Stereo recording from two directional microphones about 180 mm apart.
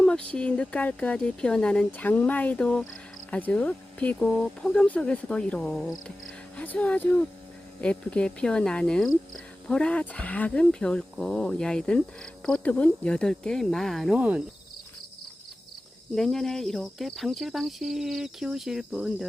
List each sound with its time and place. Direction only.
0.0 s speech: 5° left (ahead or behind)
16.1 s speech: centre (ahead or behind)